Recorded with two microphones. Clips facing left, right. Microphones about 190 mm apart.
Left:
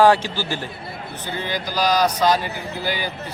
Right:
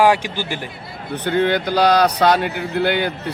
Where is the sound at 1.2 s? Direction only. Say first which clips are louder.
Right 10 dB; 60° right (ahead or behind).